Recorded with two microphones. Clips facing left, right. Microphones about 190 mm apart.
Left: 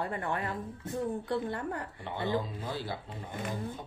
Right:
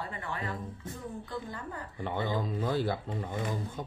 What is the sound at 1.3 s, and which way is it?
Speech, 65° left (ahead or behind).